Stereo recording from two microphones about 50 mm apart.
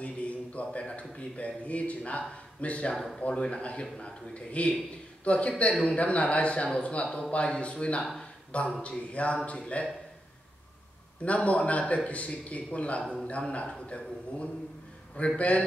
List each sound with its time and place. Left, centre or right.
0.0 s a man's voice: left
2.9 s speech: centre
3.2 s a man's voice: left
11.2 s a man's voice: left